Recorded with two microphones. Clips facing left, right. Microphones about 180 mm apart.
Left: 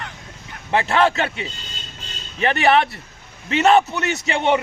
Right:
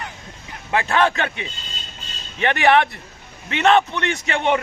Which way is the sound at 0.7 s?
30° left (ahead or behind).